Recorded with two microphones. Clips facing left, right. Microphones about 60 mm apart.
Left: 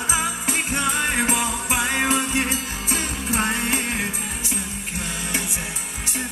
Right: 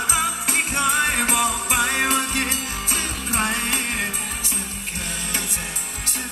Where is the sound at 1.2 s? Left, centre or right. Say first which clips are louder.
Right 1 dB; right.